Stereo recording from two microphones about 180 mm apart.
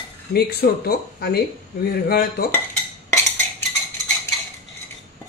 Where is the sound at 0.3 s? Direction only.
60° left (ahead or behind).